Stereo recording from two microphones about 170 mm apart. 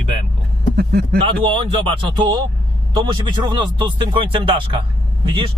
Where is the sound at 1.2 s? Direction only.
30° right (ahead or behind).